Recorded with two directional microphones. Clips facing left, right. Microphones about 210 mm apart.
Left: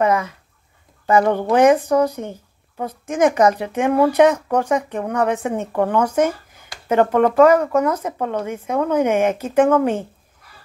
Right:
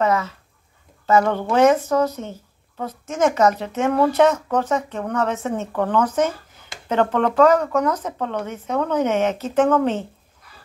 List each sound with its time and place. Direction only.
0.0 s a woman's voice: 15° left (ahead or behind)